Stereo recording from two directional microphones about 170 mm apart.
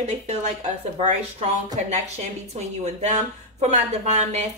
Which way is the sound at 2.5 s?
40° right (ahead or behind).